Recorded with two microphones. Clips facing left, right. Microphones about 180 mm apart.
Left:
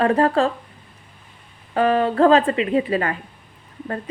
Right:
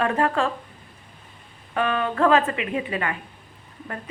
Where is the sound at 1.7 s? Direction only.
35° left (ahead or behind).